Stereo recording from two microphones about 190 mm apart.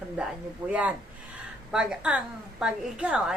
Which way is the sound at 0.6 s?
20° right (ahead or behind).